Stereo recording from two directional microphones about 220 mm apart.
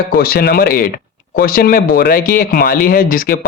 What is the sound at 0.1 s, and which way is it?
Speech, 45° left (ahead or behind).